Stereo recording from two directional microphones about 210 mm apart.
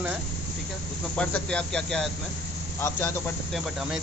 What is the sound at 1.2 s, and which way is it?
Speech, 5° left (ahead or behind).